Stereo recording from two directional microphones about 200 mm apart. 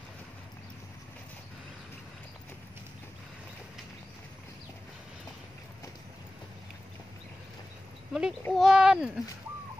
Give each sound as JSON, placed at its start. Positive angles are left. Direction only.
{"t": 8.1, "sound": "a child's voice", "side_deg": -5}